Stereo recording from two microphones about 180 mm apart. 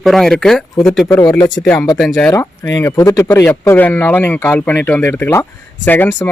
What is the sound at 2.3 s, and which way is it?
Speech, 15° left (ahead or behind).